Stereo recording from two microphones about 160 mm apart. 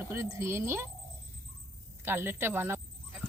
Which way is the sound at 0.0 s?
15° right (ahead or behind).